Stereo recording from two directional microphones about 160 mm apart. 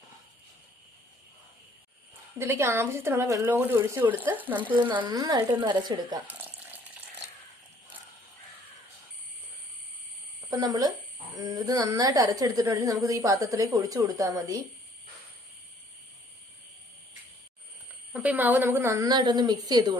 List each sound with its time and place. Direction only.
2.4 s speech: 15° right (ahead or behind)
4.7 s a woman's voice: 30° right (ahead or behind)
6.2 s water: 10° right (ahead or behind)
10.5 s a woman's voice: 25° right (ahead or behind)
18.1 s a woman's voice: 10° right (ahead or behind); by 20.0 s 25° right (ahead or behind)